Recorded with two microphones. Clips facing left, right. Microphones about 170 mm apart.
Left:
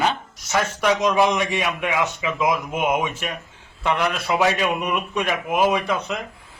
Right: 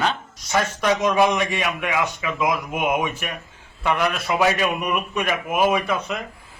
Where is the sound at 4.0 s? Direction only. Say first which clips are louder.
Even; centre (ahead or behind).